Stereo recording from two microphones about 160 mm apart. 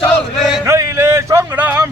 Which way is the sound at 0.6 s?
20° right (ahead or behind).